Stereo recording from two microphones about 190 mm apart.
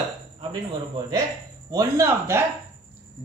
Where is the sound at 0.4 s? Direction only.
25° right (ahead or behind).